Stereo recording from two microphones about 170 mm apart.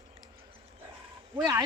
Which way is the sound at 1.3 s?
20° right (ahead or behind).